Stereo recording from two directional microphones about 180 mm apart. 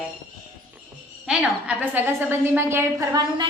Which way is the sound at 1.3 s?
5° right (ahead or behind).